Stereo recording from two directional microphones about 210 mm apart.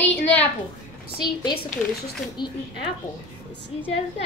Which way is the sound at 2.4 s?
20° left (ahead or behind).